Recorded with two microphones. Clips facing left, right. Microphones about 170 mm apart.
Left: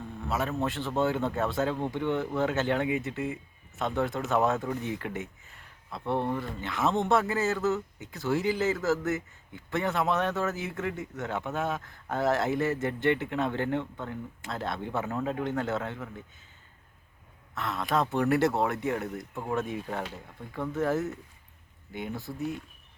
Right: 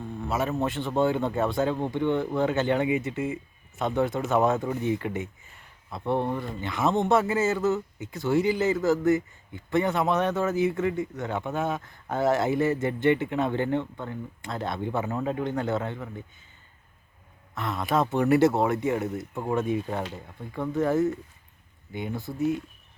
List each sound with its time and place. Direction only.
0.3 s a man's voice: centre (ahead or behind)
17.5 s speech: centre (ahead or behind)
19.3 s speech: 15° right (ahead or behind)
19.5 s speech: centre (ahead or behind)